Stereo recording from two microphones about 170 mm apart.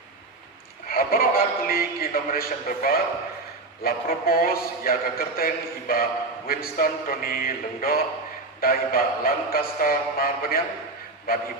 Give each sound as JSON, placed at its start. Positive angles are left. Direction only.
{"t": 0.9, "sound": "a man's voice", "side_deg": 60}